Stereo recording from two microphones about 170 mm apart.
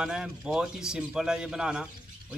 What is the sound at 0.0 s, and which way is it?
A man's voice, 5° right (ahead or behind).